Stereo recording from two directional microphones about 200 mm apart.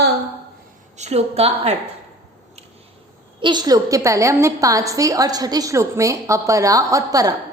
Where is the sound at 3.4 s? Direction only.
20° right (ahead or behind).